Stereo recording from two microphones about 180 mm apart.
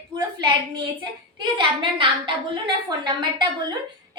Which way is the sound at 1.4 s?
25° right (ahead or behind).